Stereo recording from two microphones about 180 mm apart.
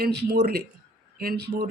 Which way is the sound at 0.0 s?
65° right (ahead or behind).